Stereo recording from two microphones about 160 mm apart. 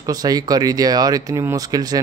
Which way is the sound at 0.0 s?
25° right (ahead or behind).